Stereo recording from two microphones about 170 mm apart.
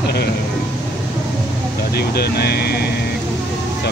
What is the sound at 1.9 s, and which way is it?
Speech, 70° left (ahead or behind).